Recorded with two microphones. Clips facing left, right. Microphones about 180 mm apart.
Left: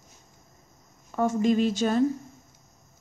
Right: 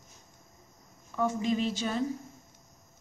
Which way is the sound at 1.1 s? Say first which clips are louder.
Left 6 dB; 50° left (ahead or behind).